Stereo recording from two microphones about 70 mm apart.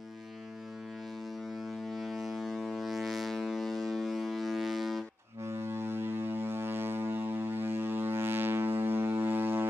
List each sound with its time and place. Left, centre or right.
2.0 s foghorn: centre
5.4 s foghorn: right